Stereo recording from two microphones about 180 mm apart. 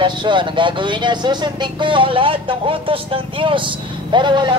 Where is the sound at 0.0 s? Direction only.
25° right (ahead or behind).